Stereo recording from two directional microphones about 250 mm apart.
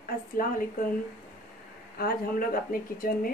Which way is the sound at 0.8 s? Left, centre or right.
Left.